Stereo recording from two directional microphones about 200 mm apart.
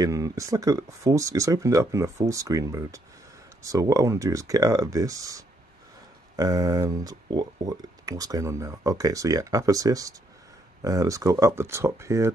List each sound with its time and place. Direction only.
0.0 s speech: 15° right (ahead or behind)